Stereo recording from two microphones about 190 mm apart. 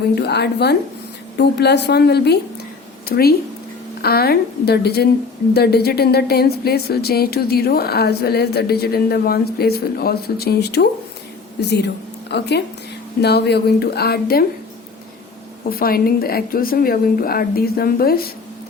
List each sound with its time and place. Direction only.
0.2 s a woman's voice: 60° left (ahead or behind)
15.7 s a woman's voice: 50° left (ahead or behind)